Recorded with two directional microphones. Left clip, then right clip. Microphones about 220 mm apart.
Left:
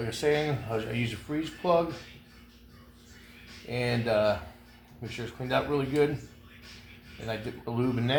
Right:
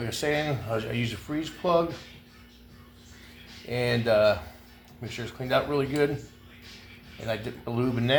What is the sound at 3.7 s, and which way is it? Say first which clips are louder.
Speech: right 4 dB; 30° right (ahead or behind).